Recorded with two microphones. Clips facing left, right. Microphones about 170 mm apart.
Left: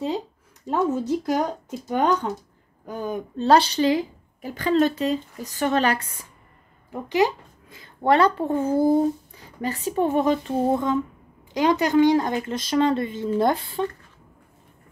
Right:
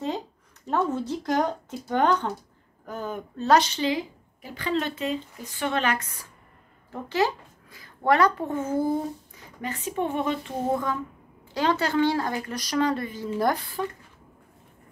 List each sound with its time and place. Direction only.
0.7 s speech: 10° left (ahead or behind)
3.3 s a woman's voice: 30° left (ahead or behind)
6.9 s a child's voice: 15° left (ahead or behind); by 10.5 s 40° left (ahead or behind)
10.7 s speech: 20° left (ahead or behind)